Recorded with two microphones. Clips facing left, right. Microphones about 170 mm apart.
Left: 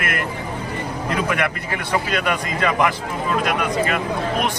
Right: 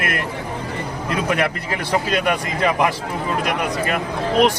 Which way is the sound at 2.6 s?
20° right (ahead or behind).